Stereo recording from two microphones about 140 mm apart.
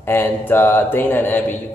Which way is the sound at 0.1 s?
15° left (ahead or behind).